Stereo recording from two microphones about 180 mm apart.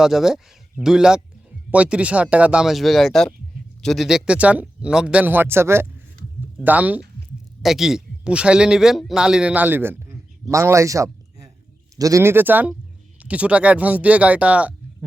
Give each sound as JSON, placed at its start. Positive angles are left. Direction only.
{"t": 0.0, "sound": "a man's voice", "side_deg": 0}